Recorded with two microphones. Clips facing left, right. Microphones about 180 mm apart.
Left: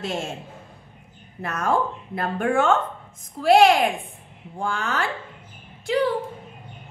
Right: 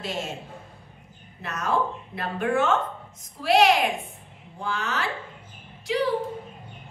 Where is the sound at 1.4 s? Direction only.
50° left (ahead or behind).